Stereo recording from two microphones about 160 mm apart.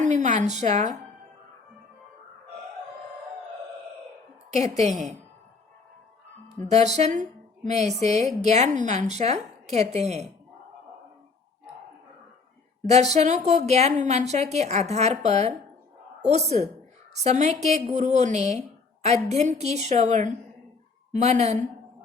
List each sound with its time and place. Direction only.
0.0 s a woman's voice: 50° right (ahead or behind)
6.6 s a woman's voice: 45° right (ahead or behind)
12.8 s a woman's voice: 45° right (ahead or behind)